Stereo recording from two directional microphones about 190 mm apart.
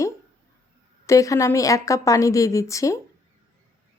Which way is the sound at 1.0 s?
15° left (ahead or behind).